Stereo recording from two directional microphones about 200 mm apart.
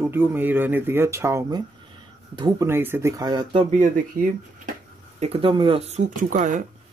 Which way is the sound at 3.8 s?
40° right (ahead or behind).